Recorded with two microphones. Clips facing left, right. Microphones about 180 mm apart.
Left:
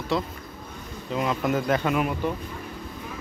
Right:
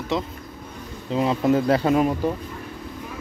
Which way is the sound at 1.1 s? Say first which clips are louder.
Right 5 dB; 30° right (ahead or behind).